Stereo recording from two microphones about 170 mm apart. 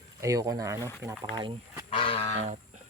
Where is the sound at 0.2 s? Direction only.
20° right (ahead or behind).